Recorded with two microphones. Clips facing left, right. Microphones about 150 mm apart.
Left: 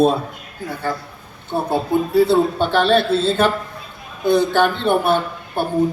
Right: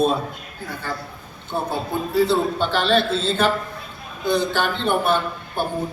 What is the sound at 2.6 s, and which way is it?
Speech, 50° left (ahead or behind).